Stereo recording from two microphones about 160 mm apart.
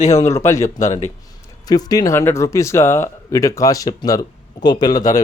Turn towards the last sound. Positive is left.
turn(degrees=25)  # may be behind; listen again after turning